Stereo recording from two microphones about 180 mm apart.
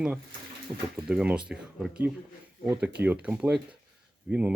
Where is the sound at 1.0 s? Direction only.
5° right (ahead or behind).